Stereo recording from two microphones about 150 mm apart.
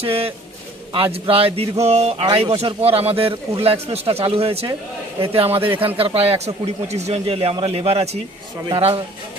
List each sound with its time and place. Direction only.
0.0 s speech: 40° right (ahead or behind)